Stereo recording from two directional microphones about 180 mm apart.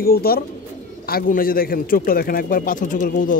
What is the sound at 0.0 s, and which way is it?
Speech, 55° left (ahead or behind).